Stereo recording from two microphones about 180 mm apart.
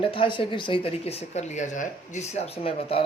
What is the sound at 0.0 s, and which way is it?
A man's voice, 30° left (ahead or behind).